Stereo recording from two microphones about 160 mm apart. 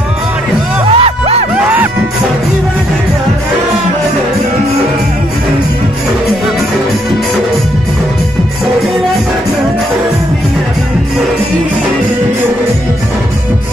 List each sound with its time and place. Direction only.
0.8 s music: 35° right (ahead or behind)